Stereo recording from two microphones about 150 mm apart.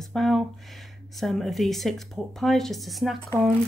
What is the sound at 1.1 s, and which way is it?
Speech, centre (ahead or behind).